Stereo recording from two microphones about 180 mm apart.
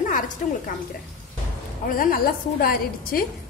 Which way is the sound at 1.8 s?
50° left (ahead or behind).